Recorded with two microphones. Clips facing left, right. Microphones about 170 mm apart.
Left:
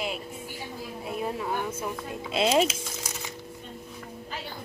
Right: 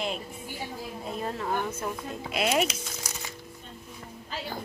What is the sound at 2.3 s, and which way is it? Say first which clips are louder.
Speech: left 3 dB; 30° left (ahead or behind).